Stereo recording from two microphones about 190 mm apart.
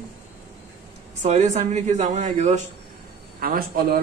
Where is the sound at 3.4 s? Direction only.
50° right (ahead or behind).